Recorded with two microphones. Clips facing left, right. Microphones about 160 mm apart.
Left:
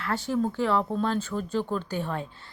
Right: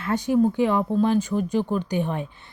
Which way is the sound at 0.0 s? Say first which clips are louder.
Right 7 dB; 15° right (ahead or behind).